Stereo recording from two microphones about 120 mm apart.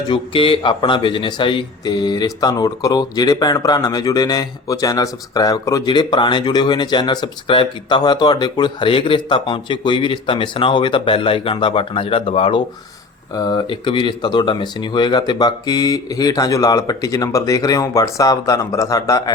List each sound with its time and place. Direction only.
0.1 s speech: 45° left (ahead or behind)
13.3 s speech: 35° left (ahead or behind)